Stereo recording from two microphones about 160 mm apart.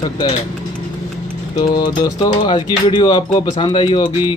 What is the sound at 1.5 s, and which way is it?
Speech, 25° left (ahead or behind).